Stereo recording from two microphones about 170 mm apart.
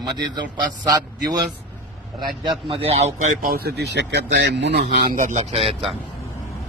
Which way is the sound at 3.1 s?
50° right (ahead or behind).